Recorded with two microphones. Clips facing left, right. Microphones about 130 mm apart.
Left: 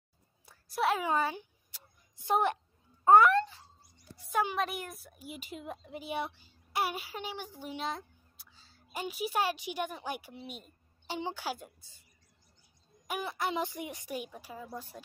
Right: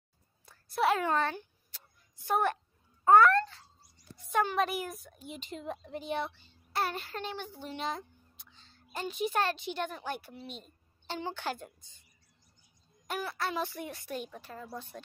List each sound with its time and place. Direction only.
0.5 s a sound: centre (ahead or behind); by 2.6 s 20° left (ahead or behind)
3.1 s speech: 15° left (ahead or behind)
4.3 s a woman's voice: 5° left (ahead or behind)
13.2 s speech: 20° left (ahead or behind)